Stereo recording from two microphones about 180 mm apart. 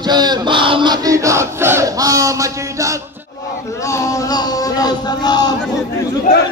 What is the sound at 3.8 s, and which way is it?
Speech, 15° left (ahead or behind).